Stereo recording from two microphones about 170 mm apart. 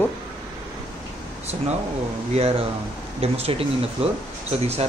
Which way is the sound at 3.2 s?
35° right (ahead or behind).